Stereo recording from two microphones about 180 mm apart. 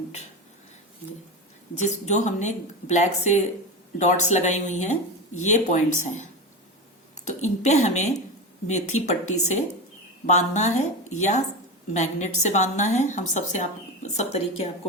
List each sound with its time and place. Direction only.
1.7 s a woman's voice: 40° left (ahead or behind)
7.3 s a woman's voice: 40° left (ahead or behind)